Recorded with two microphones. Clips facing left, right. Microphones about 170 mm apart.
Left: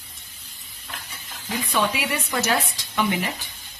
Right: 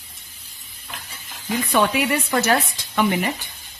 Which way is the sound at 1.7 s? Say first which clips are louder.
Right 5 dB; 60° right (ahead or behind).